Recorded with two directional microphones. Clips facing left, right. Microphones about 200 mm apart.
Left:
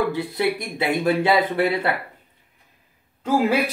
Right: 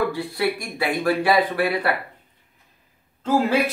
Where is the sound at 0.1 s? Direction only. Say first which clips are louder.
Left 1 dB; 20° left (ahead or behind).